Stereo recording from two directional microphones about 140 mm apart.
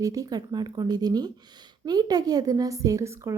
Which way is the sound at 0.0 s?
25° right (ahead or behind).